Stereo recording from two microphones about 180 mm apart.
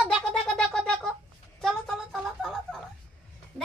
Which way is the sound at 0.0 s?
Centre (ahead or behind).